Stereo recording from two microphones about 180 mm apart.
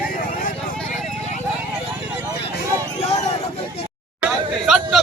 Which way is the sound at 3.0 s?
35° left (ahead or behind).